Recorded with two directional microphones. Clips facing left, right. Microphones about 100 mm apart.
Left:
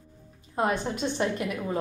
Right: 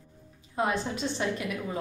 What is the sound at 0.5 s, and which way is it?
A woman's voice, 50° left (ahead or behind).